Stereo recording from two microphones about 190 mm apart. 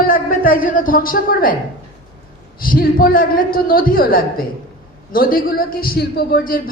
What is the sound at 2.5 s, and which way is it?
A man's voice, 50° left (ahead or behind).